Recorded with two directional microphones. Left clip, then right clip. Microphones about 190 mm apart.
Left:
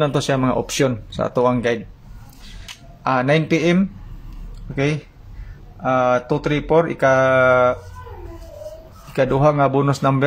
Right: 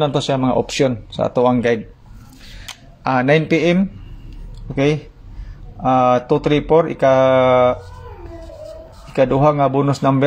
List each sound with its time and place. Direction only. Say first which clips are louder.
0.0 s speech: right 1 dB; 5° right (ahead or behind)
3.0 s speech: right 2 dB; 20° right (ahead or behind)
9.1 s speech: right 2 dB; 10° right (ahead or behind)